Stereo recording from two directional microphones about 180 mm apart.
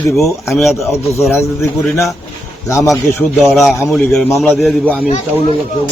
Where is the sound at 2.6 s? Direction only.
15° left (ahead or behind).